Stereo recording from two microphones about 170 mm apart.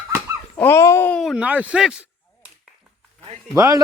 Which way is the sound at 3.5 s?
15° right (ahead or behind).